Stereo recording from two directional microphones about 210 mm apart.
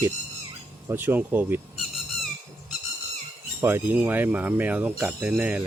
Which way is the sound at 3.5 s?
10° right (ahead or behind).